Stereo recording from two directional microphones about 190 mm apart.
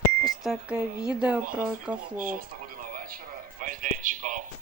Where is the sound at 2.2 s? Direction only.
50° right (ahead or behind).